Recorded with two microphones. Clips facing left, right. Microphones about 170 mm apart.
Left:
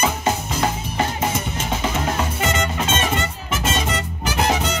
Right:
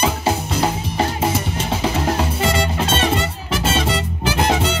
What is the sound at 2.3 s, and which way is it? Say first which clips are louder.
Music: right 3 dB; 30° right (ahead or behind).